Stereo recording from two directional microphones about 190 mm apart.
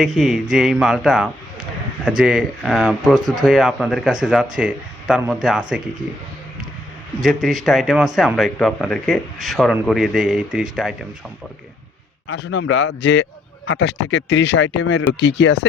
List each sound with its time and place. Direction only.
0.0 s speech: centre (ahead or behind)
7.2 s speech: centre (ahead or behind)
12.3 s speech: 70° left (ahead or behind)